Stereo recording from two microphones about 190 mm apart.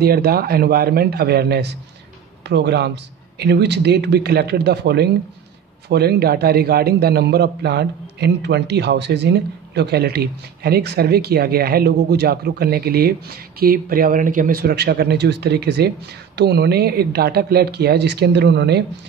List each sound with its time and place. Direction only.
0.0 s a man's voice: 55° right (ahead or behind)